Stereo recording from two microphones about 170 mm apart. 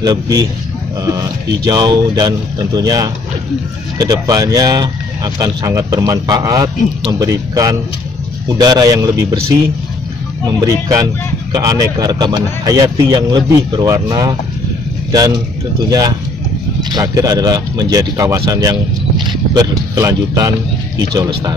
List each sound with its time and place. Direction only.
0.0 s speech: 25° right (ahead or behind)
10.4 s a man's voice: 25° right (ahead or behind)